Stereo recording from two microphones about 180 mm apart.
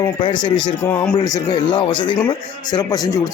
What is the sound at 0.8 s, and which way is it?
A man's voice, 15° left (ahead or behind).